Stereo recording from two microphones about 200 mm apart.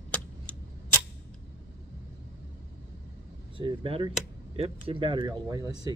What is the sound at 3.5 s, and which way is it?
Speech, 25° right (ahead or behind).